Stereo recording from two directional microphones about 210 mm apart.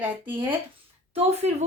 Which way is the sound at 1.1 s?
30° right (ahead or behind).